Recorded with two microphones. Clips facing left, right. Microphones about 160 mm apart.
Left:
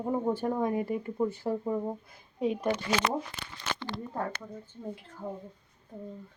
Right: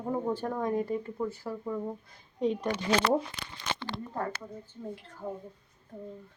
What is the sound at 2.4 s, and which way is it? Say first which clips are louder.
Speech: left 1 dB; 5° left (ahead or behind).